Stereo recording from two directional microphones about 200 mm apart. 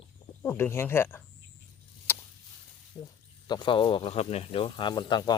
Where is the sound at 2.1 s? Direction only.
10° left (ahead or behind).